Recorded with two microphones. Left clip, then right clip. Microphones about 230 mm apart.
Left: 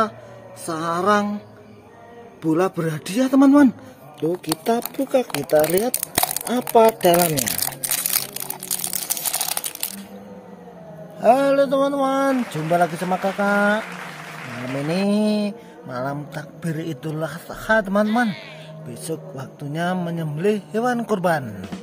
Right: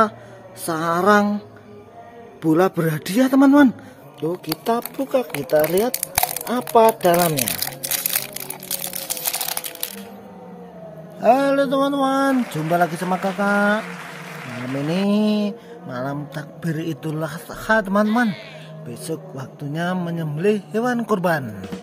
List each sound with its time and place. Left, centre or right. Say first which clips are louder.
0.7 s a man's voice: right 3 dB; centre
2.4 s a man's voice: right 3 dB; centre
4.2 s speech: left 2 dB; centre
11.1 s mantra: left 1 dB; centre
14.9 s mantra: even; centre